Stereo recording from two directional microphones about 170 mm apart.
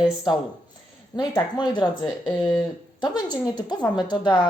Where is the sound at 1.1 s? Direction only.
25° left (ahead or behind).